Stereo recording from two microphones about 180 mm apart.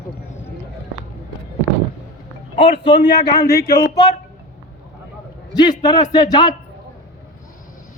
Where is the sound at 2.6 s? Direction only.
30° left (ahead or behind).